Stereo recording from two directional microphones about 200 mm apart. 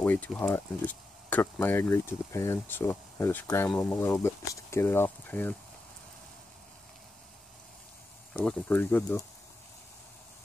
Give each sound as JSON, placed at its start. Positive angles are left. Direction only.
{"t": 0.0, "sound": "speech", "side_deg": 10}
{"t": 8.3, "sound": "speech", "side_deg": 5}